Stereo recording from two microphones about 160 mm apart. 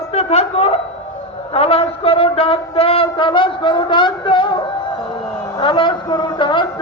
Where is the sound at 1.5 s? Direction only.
35° left (ahead or behind).